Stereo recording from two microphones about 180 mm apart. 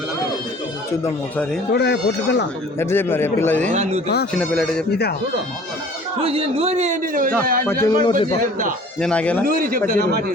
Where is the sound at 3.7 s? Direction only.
40° right (ahead or behind).